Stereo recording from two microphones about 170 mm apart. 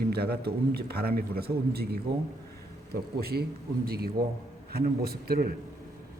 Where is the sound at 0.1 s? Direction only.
70° right (ahead or behind).